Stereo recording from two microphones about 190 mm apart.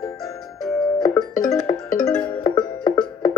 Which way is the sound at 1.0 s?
20° left (ahead or behind).